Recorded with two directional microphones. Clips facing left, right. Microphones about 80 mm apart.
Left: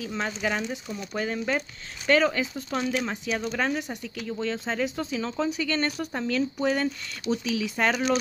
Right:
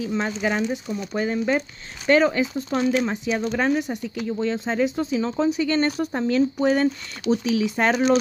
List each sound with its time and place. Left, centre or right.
0.0 s speech: centre